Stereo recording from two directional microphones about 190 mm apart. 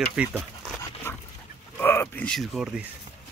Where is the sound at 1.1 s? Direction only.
15° left (ahead or behind).